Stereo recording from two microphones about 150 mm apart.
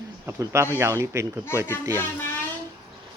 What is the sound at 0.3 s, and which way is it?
Speech, 15° right (ahead or behind).